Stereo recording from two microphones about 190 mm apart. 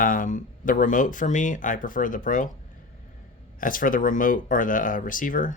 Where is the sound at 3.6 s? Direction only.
45° left (ahead or behind).